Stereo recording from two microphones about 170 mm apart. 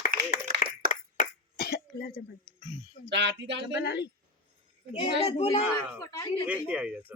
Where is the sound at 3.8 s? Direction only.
80° left.